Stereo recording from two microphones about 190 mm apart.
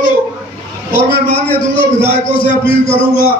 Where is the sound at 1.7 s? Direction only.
25° left (ahead or behind).